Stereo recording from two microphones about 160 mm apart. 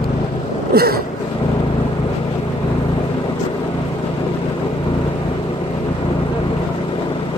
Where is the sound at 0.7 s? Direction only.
75° right (ahead or behind).